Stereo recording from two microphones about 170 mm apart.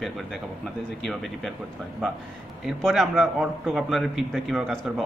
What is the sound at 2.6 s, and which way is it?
A man's voice, centre (ahead or behind).